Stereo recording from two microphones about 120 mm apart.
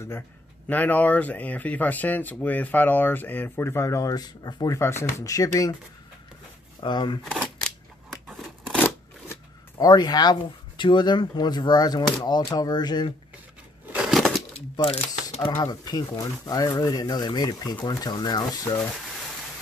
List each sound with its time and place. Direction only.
0.7 s speech: 15° left (ahead or behind); by 4.7 s 35° left (ahead or behind)
4.7 s speech: 20° left (ahead or behind)
6.8 s speech: 40° left (ahead or behind)
8.1 s a sound: centre (ahead or behind)
9.8 s speech: 35° left (ahead or behind)
13.9 s a sound: 5° right (ahead or behind)
14.8 s speech: 35° left (ahead or behind)